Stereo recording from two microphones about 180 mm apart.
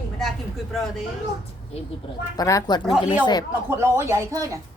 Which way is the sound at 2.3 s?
20° left (ahead or behind).